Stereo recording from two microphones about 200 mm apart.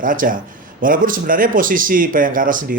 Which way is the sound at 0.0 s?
45° right (ahead or behind).